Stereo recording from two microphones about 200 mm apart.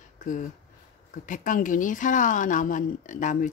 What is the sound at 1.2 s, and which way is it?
Speech, 40° left (ahead or behind).